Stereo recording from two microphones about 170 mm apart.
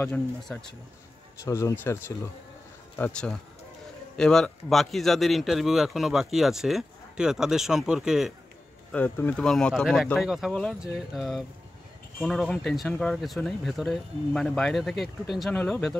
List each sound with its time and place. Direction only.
0.4 s a man's voice: centre (ahead or behind)
1.4 s a man's voice: 15° left (ahead or behind); by 8.3 s 5° right (ahead or behind)
8.9 s a man's voice: 10° left (ahead or behind)